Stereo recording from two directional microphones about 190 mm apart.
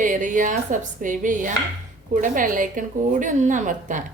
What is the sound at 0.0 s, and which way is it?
A woman's voice, 40° right (ahead or behind).